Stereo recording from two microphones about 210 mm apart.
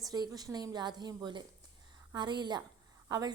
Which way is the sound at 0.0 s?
15° right (ahead or behind).